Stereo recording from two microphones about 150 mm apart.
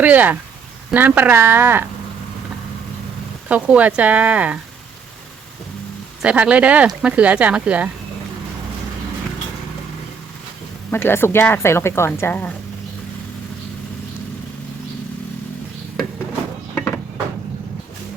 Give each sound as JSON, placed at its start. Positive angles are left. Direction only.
{"t": 0.0, "sound": "speech", "side_deg": -10}
{"t": 3.5, "sound": "speech", "side_deg": -10}
{"t": 6.2, "sound": "speech", "side_deg": -10}
{"t": 10.9, "sound": "speech", "side_deg": 15}
{"t": 16.7, "sound": "a sound", "side_deg": 15}